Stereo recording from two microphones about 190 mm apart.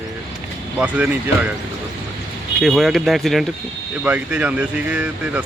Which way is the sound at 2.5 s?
Centre (ahead or behind).